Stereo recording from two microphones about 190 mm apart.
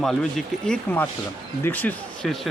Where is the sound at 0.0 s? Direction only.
Centre (ahead or behind).